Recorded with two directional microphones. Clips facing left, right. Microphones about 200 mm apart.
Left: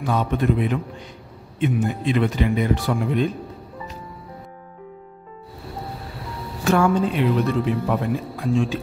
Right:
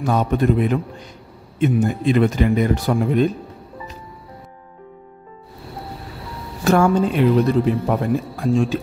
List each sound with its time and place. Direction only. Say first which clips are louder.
0.0 s speech: right 3 dB; 45° right (ahead or behind)
6.6 s speech: right 3 dB; 40° right (ahead or behind)